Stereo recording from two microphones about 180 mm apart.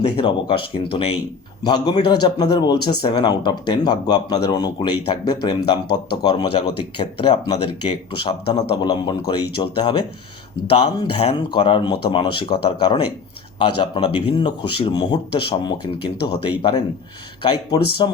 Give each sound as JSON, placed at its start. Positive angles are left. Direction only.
{"t": 0.2, "sound": "speech", "side_deg": 30}
{"t": 17.4, "sound": "speech", "side_deg": 25}